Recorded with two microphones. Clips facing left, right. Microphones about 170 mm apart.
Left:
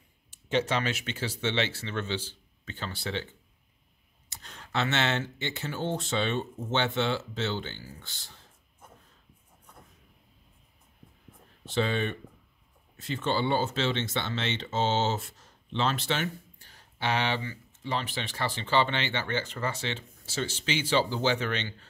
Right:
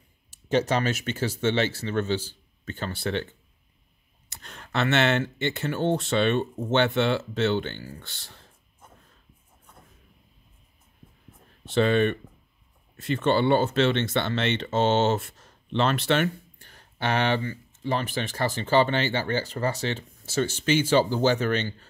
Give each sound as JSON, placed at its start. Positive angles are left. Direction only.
{"t": 0.3, "sound": "speech", "side_deg": -40}
{"t": 4.3, "sound": "speech", "side_deg": -60}
{"t": 11.6, "sound": "speech", "side_deg": -60}